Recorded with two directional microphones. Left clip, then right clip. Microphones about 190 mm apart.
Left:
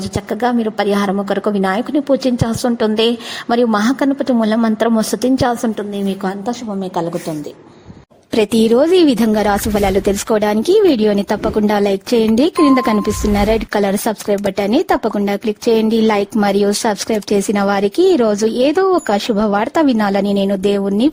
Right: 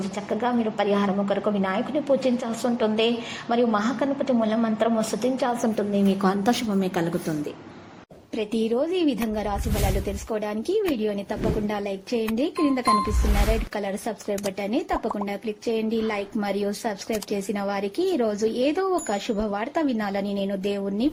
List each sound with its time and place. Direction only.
0.3 s a woman's voice: 40° left (ahead or behind)
8.4 s a woman's voice: 70° left (ahead or behind)